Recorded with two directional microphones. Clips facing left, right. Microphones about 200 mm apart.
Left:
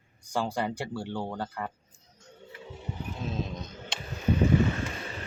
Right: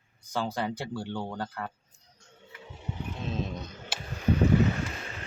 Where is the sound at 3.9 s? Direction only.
5° right (ahead or behind).